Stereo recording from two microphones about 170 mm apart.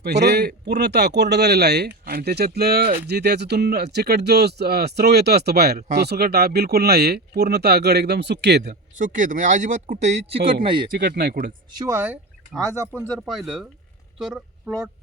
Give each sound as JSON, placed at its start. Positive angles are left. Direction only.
{"t": 0.0, "sound": "speech", "side_deg": -80}
{"t": 9.0, "sound": "speech", "side_deg": -50}
{"t": 10.8, "sound": "speech", "side_deg": -55}
{"t": 11.8, "sound": "speech", "side_deg": -15}
{"t": 13.1, "sound": "speech", "side_deg": 0}